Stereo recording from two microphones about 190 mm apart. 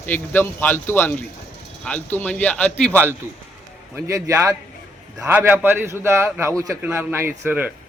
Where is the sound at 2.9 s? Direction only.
10° right (ahead or behind).